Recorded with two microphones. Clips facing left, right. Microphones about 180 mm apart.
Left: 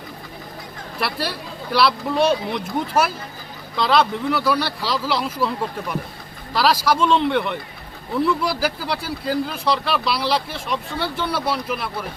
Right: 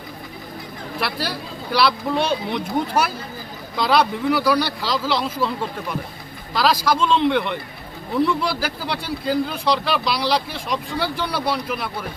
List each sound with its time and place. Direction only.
0.9 s speech: centre (ahead or behind)
6.5 s speech: 5° left (ahead or behind)